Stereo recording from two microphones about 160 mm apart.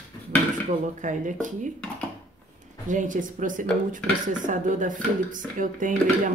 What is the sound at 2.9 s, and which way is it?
Speech, 55° right (ahead or behind).